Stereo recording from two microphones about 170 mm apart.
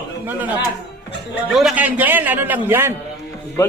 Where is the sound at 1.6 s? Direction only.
5° right (ahead or behind).